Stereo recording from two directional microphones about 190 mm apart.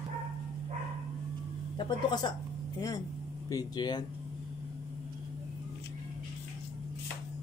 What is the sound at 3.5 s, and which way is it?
Speech, 20° left (ahead or behind).